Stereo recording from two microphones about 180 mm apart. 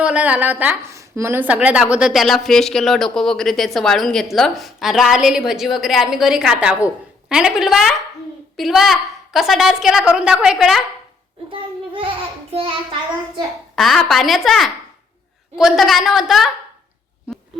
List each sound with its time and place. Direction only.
0.0 s a woman's voice: 5° right (ahead or behind)
11.5 s speech: 30° right (ahead or behind)
13.7 s a woman's voice: centre (ahead or behind)